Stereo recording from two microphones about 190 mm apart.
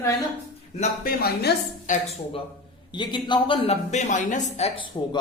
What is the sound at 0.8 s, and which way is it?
Speech, 50° left (ahead or behind).